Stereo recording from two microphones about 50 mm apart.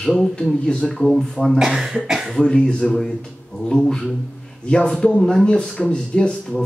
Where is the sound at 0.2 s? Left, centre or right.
Centre.